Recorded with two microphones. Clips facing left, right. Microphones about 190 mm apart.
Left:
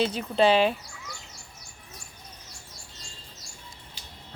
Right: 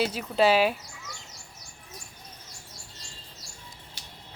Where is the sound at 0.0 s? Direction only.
5° right (ahead or behind).